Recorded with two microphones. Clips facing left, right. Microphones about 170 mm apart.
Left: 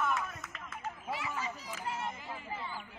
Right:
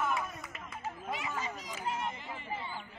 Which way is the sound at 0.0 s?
5° right (ahead or behind).